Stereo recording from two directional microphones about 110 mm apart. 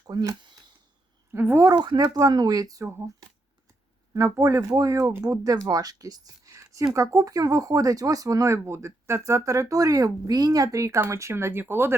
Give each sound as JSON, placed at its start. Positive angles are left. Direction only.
{"t": 0.1, "sound": "speech", "side_deg": -40}
{"t": 1.3, "sound": "speech", "side_deg": -20}
{"t": 1.6, "sound": "speech", "side_deg": -40}